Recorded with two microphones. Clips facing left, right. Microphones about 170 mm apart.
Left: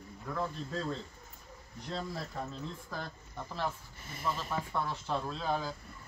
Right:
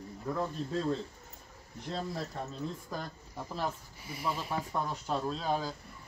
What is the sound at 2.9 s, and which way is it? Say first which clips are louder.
Speech: right 2 dB; 10° right (ahead or behind).